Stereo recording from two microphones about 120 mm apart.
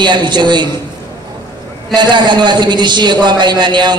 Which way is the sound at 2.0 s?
40° right (ahead or behind).